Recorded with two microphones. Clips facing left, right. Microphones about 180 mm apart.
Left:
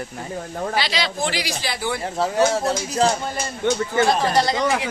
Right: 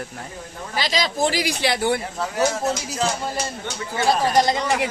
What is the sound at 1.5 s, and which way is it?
Speech, 70° right (ahead or behind).